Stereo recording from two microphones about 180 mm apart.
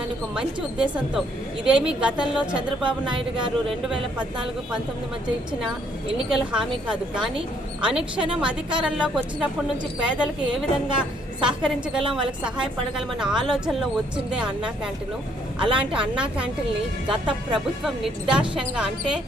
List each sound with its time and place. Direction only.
0.3 s a woman's voice: 5° right (ahead or behind)
2.6 s speech: 25° right (ahead or behind)
3.8 s a woman's voice: 5° right (ahead or behind)
6.1 s a woman's voice: 5° right (ahead or behind)
10.8 s a woman's voice: 25° right (ahead or behind)
11.4 s a woman's voice: 5° right (ahead or behind)